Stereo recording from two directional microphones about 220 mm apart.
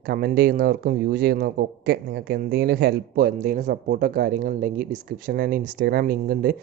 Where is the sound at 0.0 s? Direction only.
40° right (ahead or behind).